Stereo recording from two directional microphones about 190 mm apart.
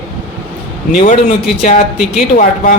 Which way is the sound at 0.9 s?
45° left (ahead or behind).